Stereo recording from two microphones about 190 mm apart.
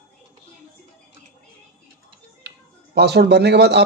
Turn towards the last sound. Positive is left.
turn(degrees=-60)  # may be behind; listen again after turning